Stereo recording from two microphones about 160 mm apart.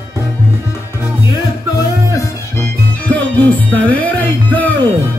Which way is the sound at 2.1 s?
10° left (ahead or behind).